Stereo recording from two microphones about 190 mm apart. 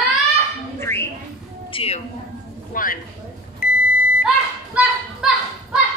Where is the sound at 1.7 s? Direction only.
30° left (ahead or behind).